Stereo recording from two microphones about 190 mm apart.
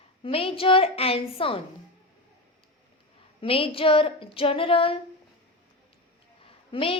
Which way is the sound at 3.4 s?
30° left (ahead or behind).